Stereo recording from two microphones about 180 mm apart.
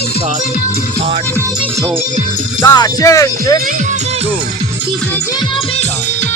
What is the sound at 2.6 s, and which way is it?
Speech, 20° left (ahead or behind).